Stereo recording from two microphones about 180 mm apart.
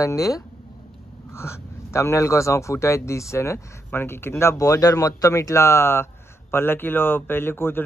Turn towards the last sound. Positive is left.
turn(degrees=10)  # may be behind; listen again after turning